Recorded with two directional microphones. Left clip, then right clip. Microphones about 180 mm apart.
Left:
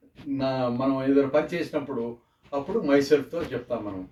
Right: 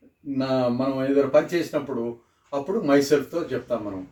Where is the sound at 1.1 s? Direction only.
5° left (ahead or behind).